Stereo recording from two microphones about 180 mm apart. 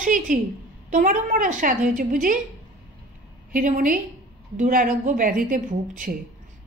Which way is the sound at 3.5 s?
45° right (ahead or behind).